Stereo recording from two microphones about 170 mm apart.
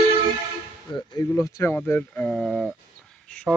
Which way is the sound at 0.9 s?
25° left (ahead or behind).